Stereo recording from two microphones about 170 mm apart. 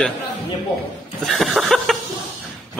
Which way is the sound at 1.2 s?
Centre (ahead or behind).